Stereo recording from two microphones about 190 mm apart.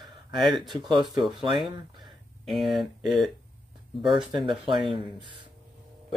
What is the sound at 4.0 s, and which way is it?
Speech, 25° right (ahead or behind).